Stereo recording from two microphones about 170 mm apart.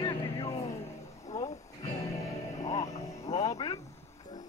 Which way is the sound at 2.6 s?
40° left (ahead or behind).